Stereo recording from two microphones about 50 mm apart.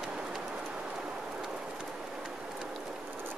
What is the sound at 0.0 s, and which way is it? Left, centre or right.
Train, centre.